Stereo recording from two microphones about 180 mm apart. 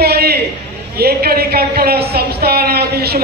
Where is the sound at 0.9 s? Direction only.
60° right (ahead or behind).